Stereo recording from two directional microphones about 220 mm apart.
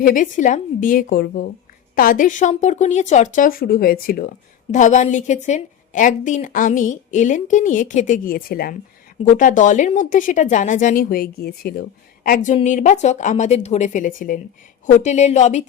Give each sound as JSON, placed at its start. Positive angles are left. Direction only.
{"t": 0.0, "sound": "a woman's voice", "side_deg": 40}